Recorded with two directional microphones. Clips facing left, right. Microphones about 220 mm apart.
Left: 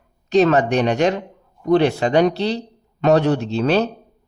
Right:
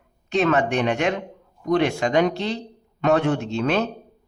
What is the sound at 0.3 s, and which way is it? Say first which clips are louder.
Speech: left 5 dB; 40° left (ahead or behind).